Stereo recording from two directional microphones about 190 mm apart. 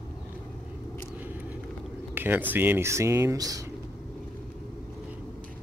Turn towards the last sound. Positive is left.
turn(degrees=-20)  # may be behind; listen again after turning